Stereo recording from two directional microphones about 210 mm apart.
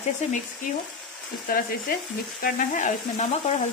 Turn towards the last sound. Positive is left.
turn(degrees=35)  # may be behind; listen again after turning